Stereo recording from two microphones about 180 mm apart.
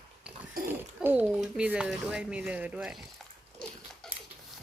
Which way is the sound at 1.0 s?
10° right (ahead or behind).